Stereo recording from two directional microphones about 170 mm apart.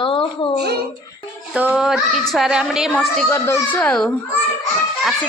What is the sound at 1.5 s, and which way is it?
A woman's voice, 5° right (ahead or behind).